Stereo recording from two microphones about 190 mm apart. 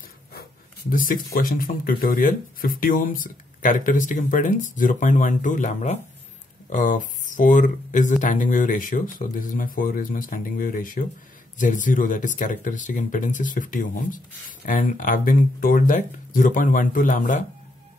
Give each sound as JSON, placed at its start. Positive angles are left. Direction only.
{"t": 0.3, "sound": "speech", "side_deg": 50}